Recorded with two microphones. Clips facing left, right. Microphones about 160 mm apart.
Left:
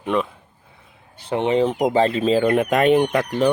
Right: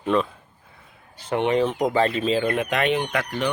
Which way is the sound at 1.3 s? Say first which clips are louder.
Left 2 dB; 30° left (ahead or behind).